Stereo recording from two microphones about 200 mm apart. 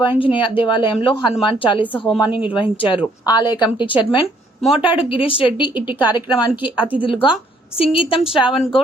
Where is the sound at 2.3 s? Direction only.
10° right (ahead or behind).